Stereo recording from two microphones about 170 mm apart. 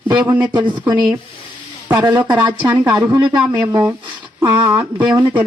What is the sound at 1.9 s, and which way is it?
Speech, 25° right (ahead or behind).